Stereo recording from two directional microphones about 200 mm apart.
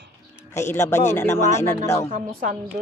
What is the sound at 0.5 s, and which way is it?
Speech, 10° left (ahead or behind).